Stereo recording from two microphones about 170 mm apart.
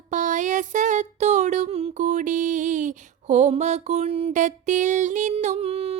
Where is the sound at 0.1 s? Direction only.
45° right (ahead or behind).